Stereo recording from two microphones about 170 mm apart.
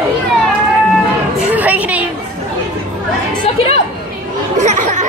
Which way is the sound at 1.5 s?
10° right (ahead or behind).